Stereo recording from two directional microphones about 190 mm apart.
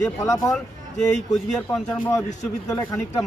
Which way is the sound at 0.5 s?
5° left (ahead or behind).